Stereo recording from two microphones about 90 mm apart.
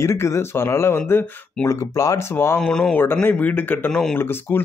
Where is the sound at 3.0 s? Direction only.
25° left (ahead or behind).